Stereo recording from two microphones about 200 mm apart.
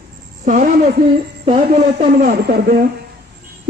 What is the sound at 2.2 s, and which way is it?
Speech, 50° right (ahead or behind).